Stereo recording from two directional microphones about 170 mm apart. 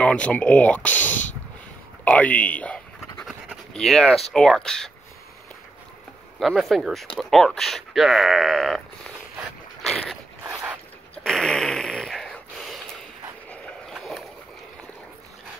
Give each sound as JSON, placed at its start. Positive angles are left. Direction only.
{"t": 0.0, "sound": "speech", "side_deg": 5}
{"t": 2.0, "sound": "pant", "side_deg": 10}
{"t": 3.7, "sound": "speech", "side_deg": 5}
{"t": 6.4, "sound": "speech", "side_deg": 0}
{"t": 9.8, "sound": "boat", "side_deg": 0}
{"t": 10.4, "sound": "a sound", "side_deg": -10}
{"t": 11.2, "sound": "a sound", "side_deg": 5}
{"t": 13.5, "sound": "dog", "side_deg": 0}